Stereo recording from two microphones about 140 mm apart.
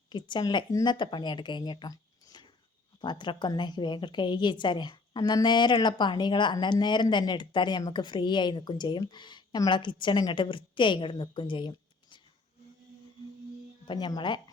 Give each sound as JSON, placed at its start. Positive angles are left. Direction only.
{"t": 0.1, "sound": "a woman's voice", "side_deg": 30}
{"t": 13.8, "sound": "a woman's voice", "side_deg": 30}